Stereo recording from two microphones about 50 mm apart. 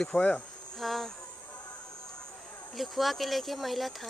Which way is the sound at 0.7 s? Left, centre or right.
Centre.